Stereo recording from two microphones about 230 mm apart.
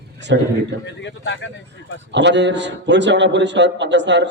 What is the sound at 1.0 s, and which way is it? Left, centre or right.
Speech, left.